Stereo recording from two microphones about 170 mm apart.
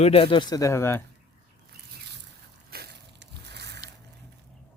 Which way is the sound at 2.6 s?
65° right (ahead or behind).